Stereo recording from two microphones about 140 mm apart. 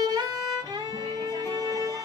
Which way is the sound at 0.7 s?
25° right (ahead or behind).